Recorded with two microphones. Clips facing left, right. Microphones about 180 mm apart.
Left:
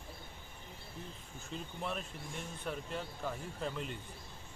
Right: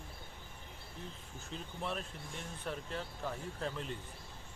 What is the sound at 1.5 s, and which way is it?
Speech, centre (ahead or behind).